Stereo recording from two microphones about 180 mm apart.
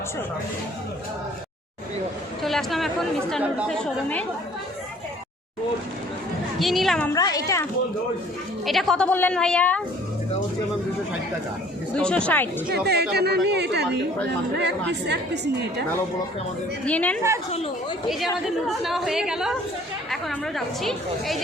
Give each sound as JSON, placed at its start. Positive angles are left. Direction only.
{"t": 2.4, "sound": "speech", "side_deg": 0}
{"t": 6.6, "sound": "a woman's voice", "side_deg": 0}
{"t": 7.1, "sound": "speech", "side_deg": 20}
{"t": 8.6, "sound": "a woman's voice", "side_deg": 0}
{"t": 11.9, "sound": "a woman's voice", "side_deg": 5}
{"t": 12.6, "sound": "speech", "side_deg": -65}
{"t": 16.8, "sound": "speech", "side_deg": 5}
{"t": 18.4, "sound": "a woman's voice", "side_deg": 0}